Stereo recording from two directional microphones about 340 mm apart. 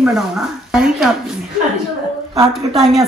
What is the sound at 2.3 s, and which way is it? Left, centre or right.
Speech, centre.